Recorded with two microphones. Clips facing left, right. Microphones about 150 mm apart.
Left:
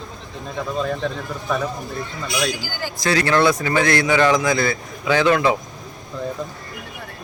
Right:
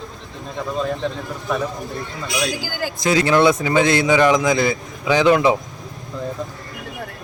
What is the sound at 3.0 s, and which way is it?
Speech, 15° right (ahead or behind).